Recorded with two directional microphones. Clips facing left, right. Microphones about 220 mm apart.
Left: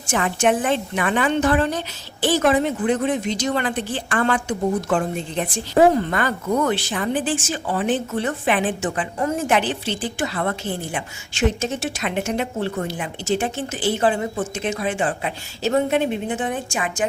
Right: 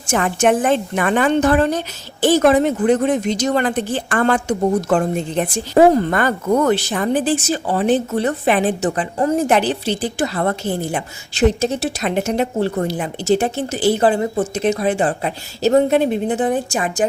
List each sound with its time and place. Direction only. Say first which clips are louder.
0.1 s a woman's voice: right 4 dB; 45° right (ahead or behind)